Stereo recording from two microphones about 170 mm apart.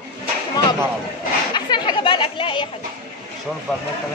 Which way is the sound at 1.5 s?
25° left (ahead or behind).